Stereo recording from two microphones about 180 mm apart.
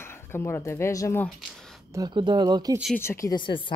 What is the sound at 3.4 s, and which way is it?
Speech, 25° left (ahead or behind).